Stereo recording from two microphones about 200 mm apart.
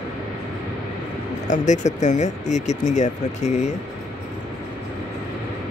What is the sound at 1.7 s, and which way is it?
Speech, 35° left (ahead or behind).